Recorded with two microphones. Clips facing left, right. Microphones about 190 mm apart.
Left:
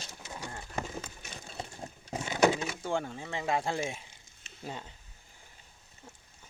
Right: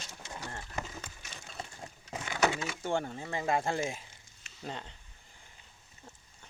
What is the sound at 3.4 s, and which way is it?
Speech, centre (ahead or behind).